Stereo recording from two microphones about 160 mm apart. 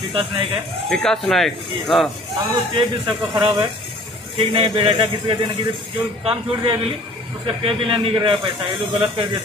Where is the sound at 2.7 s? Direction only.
30° right (ahead or behind).